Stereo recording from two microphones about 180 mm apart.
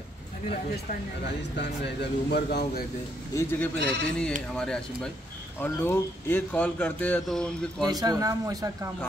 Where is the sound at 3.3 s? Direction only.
10° left (ahead or behind).